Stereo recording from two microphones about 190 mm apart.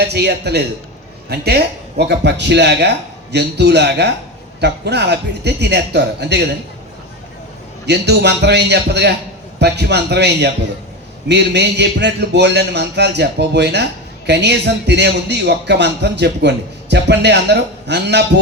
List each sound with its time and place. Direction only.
0.0 s a man's voice: 60° right (ahead or behind)
7.9 s a man's voice: 60° right (ahead or behind)